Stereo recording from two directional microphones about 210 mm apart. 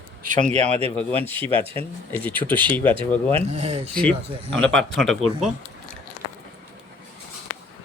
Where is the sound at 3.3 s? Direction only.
30° right (ahead or behind).